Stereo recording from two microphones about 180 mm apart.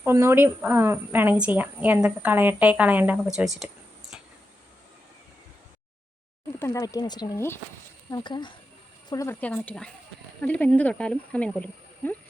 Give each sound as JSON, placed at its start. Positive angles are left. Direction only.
{"t": 0.0, "sound": "a woman's voice", "side_deg": -15}
{"t": 6.6, "sound": "speech", "side_deg": 20}
{"t": 8.1, "sound": "speech", "side_deg": 25}